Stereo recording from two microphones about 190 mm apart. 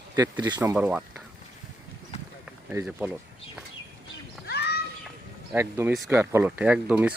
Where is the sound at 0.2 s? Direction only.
20° right (ahead or behind).